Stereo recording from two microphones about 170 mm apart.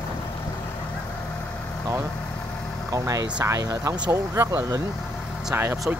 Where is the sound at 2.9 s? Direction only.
20° right (ahead or behind).